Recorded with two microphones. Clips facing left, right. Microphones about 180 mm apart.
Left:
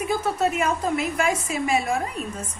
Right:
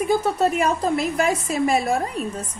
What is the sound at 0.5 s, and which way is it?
A woman's voice, 35° right (ahead or behind).